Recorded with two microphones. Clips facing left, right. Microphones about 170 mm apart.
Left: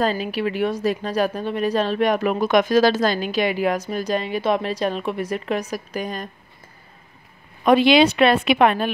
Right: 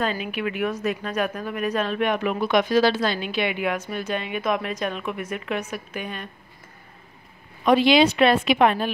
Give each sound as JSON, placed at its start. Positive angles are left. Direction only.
{"t": 0.0, "sound": "a woman's voice", "side_deg": 35}
{"t": 7.6, "sound": "a woman's voice", "side_deg": 60}